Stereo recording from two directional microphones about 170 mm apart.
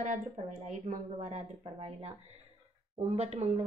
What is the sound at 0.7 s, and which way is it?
Speech, 45° right (ahead or behind).